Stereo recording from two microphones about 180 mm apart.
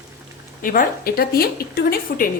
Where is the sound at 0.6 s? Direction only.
50° left (ahead or behind).